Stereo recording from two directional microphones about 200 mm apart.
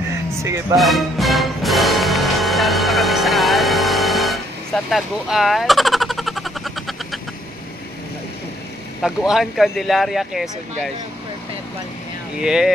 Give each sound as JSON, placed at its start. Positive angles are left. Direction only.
{"t": 0.4, "sound": "speech", "side_deg": -15}
{"t": 0.7, "sound": "music", "side_deg": 0}
{"t": 4.8, "sound": "vehicle", "side_deg": 0}
{"t": 9.0, "sound": "speech", "side_deg": 0}
{"t": 12.4, "sound": "speech", "side_deg": -5}